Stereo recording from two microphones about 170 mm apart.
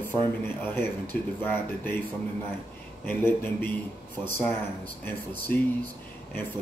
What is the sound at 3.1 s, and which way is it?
Speech, 10° left (ahead or behind).